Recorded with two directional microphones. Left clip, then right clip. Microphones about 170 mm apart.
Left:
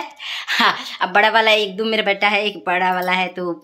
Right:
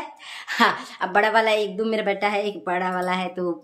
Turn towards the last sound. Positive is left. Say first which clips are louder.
# left 5 dB
turn(degrees=5)  # may be behind; listen again after turning